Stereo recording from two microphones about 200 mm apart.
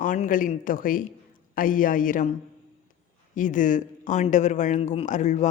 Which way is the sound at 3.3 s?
40° left (ahead or behind).